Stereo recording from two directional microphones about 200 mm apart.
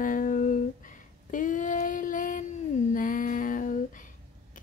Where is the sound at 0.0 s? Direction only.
40° left (ahead or behind).